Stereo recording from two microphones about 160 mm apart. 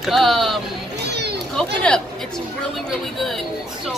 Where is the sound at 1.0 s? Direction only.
90° right.